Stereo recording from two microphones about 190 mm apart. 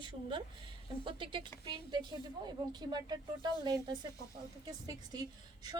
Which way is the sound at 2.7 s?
20° right (ahead or behind).